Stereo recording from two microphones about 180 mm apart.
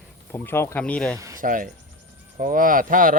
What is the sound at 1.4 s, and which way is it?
Speech, 50° right (ahead or behind).